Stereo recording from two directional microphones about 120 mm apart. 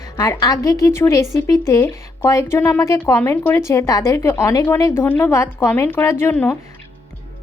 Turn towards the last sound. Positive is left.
turn(degrees=20)  # may be behind; listen again after turning